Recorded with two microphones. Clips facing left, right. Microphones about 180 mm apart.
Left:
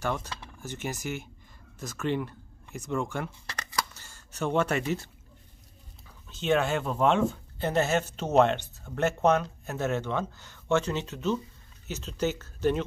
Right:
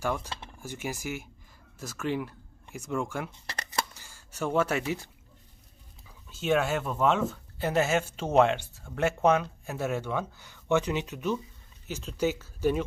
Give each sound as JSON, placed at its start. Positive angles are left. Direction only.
{"t": 0.0, "sound": "speech", "side_deg": -10}
{"t": 0.3, "sound": "a sound", "side_deg": -25}
{"t": 0.6, "sound": "speech", "side_deg": -10}
{"t": 6.3, "sound": "speech", "side_deg": -5}